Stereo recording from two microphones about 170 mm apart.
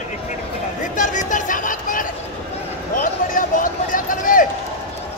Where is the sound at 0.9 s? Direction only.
50° left (ahead or behind).